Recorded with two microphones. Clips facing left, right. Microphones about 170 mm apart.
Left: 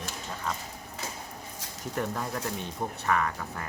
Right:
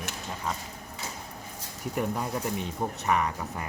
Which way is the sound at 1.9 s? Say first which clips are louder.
Right 2 dB; 15° right (ahead or behind).